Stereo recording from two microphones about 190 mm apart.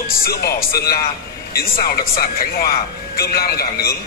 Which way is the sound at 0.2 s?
55° left (ahead or behind).